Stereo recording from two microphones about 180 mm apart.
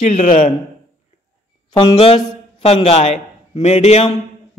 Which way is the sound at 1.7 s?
30° left (ahead or behind).